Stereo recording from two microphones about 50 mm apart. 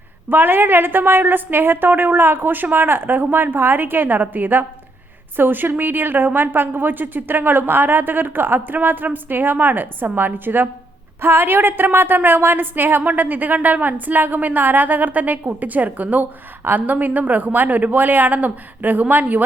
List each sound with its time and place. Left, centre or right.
0.3 s a woman's voice: right